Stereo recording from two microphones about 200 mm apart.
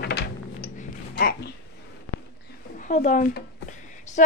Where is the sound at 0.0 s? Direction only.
55° left (ahead or behind).